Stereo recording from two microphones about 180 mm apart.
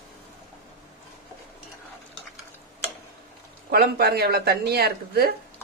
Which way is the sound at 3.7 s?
60° right (ahead or behind).